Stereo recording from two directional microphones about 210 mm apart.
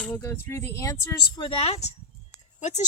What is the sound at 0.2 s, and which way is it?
Speech, 10° left (ahead or behind).